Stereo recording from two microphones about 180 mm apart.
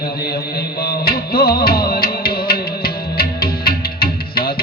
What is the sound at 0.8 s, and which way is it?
Music, 60° left (ahead or behind).